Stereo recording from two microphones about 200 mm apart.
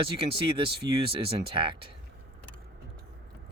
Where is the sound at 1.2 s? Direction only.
25° right (ahead or behind).